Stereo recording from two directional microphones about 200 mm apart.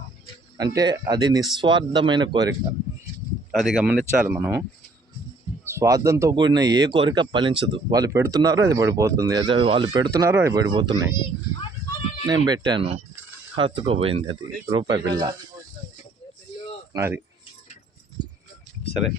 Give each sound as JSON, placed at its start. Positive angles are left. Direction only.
{"t": 0.5, "sound": "speech", "side_deg": -20}
{"t": 3.5, "sound": "speech", "side_deg": 0}
{"t": 5.6, "sound": "speech", "side_deg": -15}
{"t": 10.9, "sound": "speech", "side_deg": 25}
{"t": 12.3, "sound": "speech", "side_deg": -20}
{"t": 16.9, "sound": "speech", "side_deg": -15}
{"t": 18.2, "sound": "a sound", "side_deg": -20}